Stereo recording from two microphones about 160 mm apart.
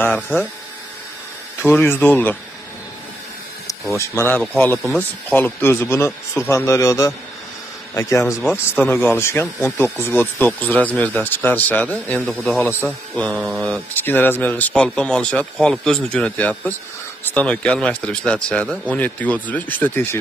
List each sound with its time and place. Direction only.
1.6 s speech: 15° left (ahead or behind)
3.9 s a man's voice: 15° left (ahead or behind)